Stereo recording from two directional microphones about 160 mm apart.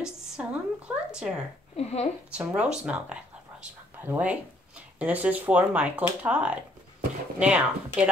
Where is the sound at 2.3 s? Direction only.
10° right (ahead or behind).